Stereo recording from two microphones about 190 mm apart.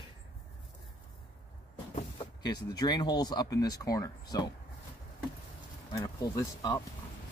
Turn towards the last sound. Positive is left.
turn(degrees=15)  # may be behind; listen again after turning